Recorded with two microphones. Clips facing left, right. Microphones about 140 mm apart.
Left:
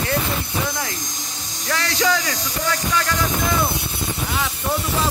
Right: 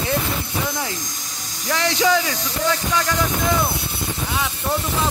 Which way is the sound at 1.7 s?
20° right (ahead or behind).